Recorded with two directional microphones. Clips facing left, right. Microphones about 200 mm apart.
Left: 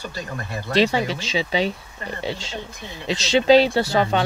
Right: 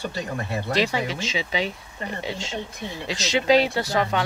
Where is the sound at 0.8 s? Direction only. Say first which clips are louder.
Left 6 dB; 30° left (ahead or behind).